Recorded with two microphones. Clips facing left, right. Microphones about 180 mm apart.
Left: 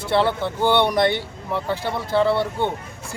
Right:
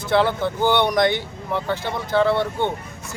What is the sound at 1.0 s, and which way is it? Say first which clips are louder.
Speech: even; 30° left (ahead or behind).